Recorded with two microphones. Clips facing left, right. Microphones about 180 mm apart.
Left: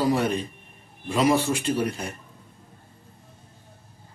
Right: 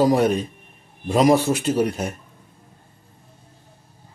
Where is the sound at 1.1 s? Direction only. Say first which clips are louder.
Right 5 dB; 40° right (ahead or behind).